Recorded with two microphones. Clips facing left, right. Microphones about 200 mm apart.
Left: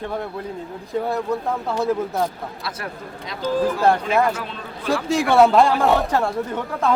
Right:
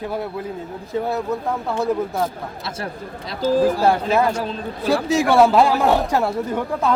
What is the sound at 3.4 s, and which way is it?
Speech, 5° right (ahead or behind).